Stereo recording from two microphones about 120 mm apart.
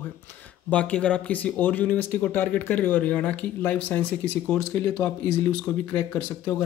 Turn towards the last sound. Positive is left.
turn(degrees=15)  # may be behind; listen again after turning